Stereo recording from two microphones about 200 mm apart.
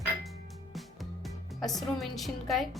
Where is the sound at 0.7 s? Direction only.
Centre (ahead or behind).